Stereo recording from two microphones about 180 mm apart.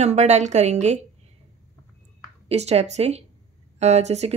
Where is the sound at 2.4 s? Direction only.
35° right (ahead or behind).